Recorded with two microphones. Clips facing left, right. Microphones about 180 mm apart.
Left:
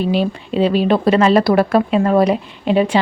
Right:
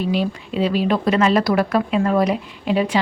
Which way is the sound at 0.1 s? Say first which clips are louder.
Left 4 dB; 30° left (ahead or behind).